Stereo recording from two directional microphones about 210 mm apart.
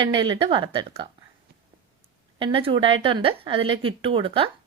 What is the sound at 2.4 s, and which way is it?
Speech, 25° right (ahead or behind).